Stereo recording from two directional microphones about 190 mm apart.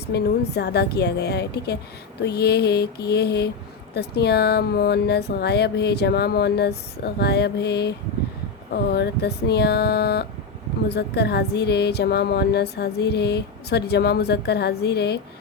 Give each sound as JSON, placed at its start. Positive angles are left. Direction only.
{"t": 0.1, "sound": "speech", "side_deg": 60}